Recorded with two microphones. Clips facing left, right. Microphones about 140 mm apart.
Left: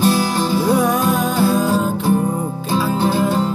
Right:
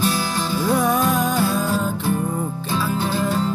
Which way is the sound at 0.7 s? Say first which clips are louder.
Left 1 dB; 10° left (ahead or behind).